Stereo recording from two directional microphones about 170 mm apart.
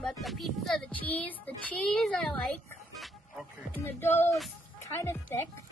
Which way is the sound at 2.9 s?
Centre (ahead or behind).